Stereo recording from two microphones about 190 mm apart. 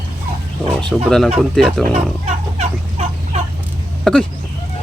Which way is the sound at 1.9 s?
35° right (ahead or behind).